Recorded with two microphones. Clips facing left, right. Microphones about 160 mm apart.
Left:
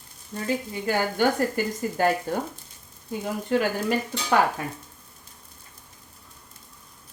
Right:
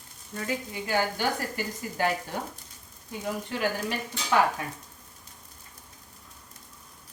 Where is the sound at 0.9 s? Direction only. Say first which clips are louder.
Left 5 dB; 50° left (ahead or behind).